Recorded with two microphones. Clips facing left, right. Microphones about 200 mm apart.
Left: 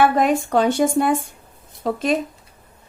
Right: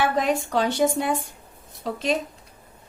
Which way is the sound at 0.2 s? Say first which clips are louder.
Left 5 dB; 50° left (ahead or behind).